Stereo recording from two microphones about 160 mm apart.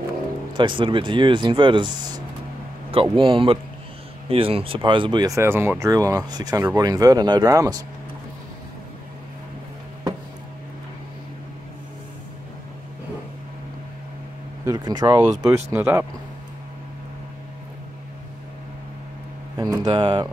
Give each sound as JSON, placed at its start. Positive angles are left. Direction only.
{"t": 0.6, "sound": "speech", "side_deg": -30}
{"t": 14.6, "sound": "speech", "side_deg": -25}
{"t": 19.5, "sound": "a sound", "side_deg": -25}